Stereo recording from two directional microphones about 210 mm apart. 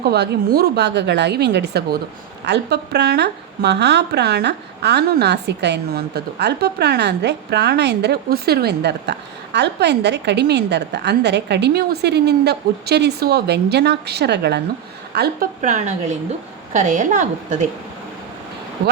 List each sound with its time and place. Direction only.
0.0 s a woman's voice: 50° right (ahead or behind)